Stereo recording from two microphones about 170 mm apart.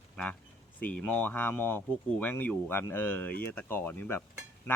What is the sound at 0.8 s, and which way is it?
Speech, 10° left (ahead or behind).